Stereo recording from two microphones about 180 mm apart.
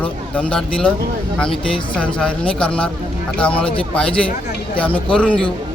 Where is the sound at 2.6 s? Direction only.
5° left (ahead or behind).